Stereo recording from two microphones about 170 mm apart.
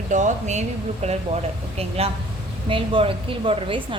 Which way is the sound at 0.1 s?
45° right (ahead or behind).